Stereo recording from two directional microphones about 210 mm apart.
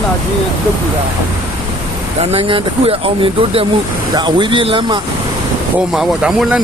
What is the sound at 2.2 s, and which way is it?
Speech, 30° right (ahead or behind).